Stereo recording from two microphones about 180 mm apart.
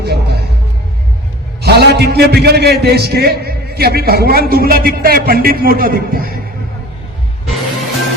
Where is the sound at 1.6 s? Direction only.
65° right (ahead or behind).